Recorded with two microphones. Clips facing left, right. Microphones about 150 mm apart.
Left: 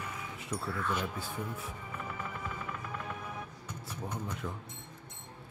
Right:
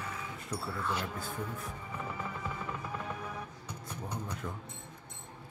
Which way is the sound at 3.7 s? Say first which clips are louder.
Left 1 dB; 15° right (ahead or behind).